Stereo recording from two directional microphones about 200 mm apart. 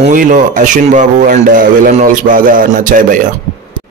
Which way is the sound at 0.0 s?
40° right (ahead or behind).